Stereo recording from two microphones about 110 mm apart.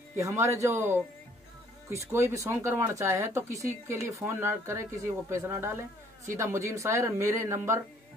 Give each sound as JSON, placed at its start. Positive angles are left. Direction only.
{"t": 0.1, "sound": "speech", "side_deg": -25}